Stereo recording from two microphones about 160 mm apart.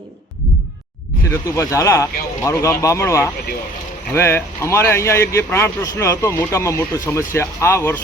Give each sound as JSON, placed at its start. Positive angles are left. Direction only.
{"t": 1.3, "sound": "speech", "side_deg": 20}